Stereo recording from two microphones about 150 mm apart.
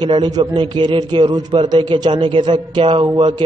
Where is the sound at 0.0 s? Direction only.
30° right (ahead or behind).